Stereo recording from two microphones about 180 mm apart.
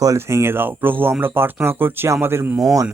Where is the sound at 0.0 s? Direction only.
15° right (ahead or behind).